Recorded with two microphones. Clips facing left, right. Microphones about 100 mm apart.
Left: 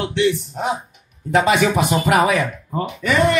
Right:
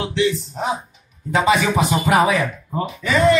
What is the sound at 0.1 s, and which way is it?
Speech, 65° left (ahead or behind).